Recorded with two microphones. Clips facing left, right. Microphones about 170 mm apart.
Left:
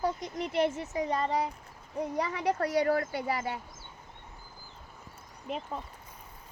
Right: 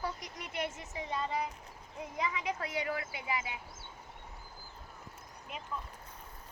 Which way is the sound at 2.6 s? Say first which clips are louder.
Left 10 dB; 45° left (ahead or behind).